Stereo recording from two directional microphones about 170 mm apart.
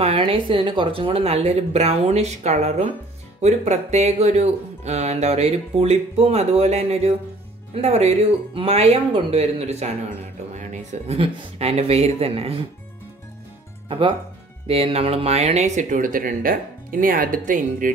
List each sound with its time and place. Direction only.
0.0 s speech: 35° right (ahead or behind)
13.8 s speech: 30° right (ahead or behind); by 17.9 s 55° right (ahead or behind)